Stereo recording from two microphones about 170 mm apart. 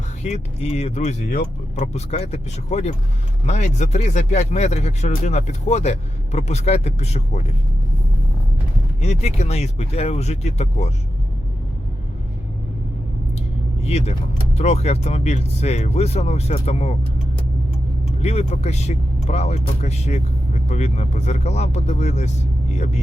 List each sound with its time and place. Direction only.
0.2 s speech: 40° left (ahead or behind)
9.0 s speech: 40° left (ahead or behind)
13.8 s speech: 40° left (ahead or behind)
18.2 s speech: 40° left (ahead or behind)